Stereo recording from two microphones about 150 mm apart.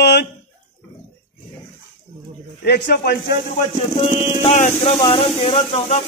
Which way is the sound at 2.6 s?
90° left.